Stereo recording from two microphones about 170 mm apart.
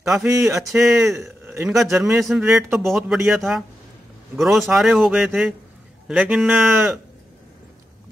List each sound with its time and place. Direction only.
0.2 s a sound: 15° right (ahead or behind)
0.6 s speech: 5° right (ahead or behind)
1.5 s speech: 15° right (ahead or behind)
1.8 s speech: centre (ahead or behind)